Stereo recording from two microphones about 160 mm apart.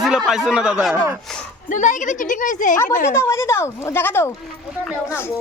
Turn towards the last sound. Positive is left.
turn(degrees=15)  # may be behind; listen again after turning